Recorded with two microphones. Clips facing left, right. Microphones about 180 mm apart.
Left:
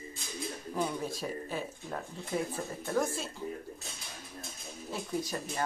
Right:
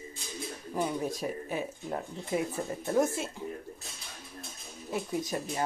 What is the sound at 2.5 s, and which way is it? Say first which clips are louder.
Speech: right 4 dB; 20° right (ahead or behind).